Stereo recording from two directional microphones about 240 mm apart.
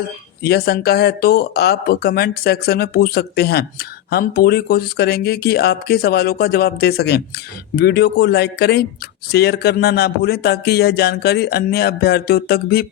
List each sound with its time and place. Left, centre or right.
0.4 s speech: left